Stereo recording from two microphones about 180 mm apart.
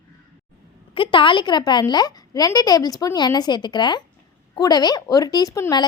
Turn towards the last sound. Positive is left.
turn(degrees=20)  # may be behind; listen again after turning